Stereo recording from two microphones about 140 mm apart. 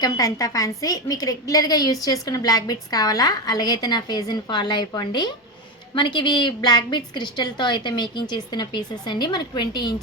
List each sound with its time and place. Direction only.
0.0 s a woman's voice: 25° left (ahead or behind)